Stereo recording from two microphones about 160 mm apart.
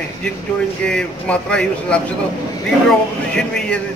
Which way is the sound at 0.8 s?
5° left (ahead or behind).